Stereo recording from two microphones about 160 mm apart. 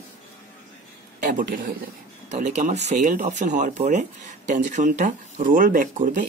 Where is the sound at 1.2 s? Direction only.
60° right (ahead or behind).